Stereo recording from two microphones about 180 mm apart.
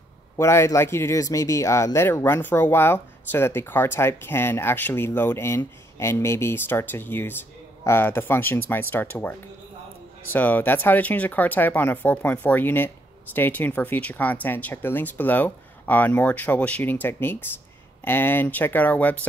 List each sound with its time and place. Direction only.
0.4 s speech: 15° left (ahead or behind)